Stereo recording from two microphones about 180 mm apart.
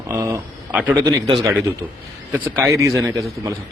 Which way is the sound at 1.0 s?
20° right (ahead or behind).